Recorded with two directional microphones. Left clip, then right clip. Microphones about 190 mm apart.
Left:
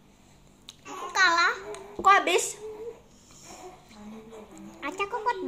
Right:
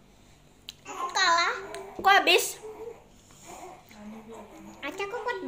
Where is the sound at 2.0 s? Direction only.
15° right (ahead or behind).